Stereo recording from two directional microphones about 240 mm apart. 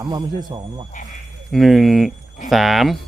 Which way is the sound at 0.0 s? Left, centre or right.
Centre.